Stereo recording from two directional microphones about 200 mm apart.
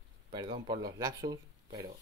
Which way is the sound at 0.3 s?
25° right (ahead or behind).